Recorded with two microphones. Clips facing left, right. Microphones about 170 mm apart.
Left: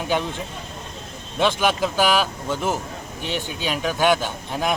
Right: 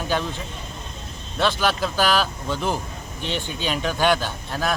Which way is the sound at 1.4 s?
15° left (ahead or behind).